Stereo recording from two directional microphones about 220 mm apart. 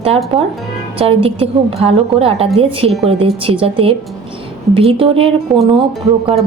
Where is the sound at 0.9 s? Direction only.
25° right (ahead or behind).